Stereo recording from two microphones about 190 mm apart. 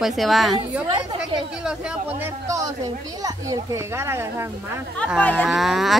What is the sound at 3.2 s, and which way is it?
A child's voice, 20° right (ahead or behind).